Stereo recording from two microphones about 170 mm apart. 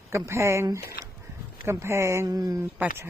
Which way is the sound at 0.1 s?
15° right (ahead or behind).